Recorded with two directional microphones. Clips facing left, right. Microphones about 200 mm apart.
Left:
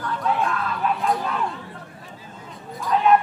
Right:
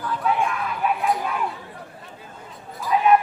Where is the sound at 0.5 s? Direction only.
15° right (ahead or behind).